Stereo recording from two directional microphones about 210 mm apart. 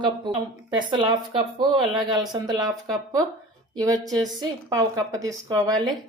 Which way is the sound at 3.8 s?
15° right (ahead or behind).